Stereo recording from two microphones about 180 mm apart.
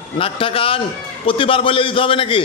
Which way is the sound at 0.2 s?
30° left (ahead or behind).